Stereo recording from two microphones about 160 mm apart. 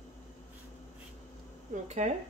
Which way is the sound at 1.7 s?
50° right (ahead or behind).